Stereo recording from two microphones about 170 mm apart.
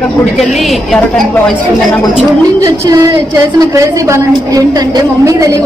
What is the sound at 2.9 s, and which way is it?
A woman's voice, 20° right (ahead or behind).